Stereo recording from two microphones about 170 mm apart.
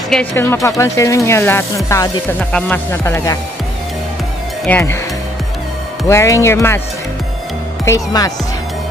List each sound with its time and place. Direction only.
0.1 s speech: 10° left (ahead or behind)
4.7 s speech: 10° left (ahead or behind)
6.0 s speech: 15° left (ahead or behind)
7.8 s speech: 20° left (ahead or behind)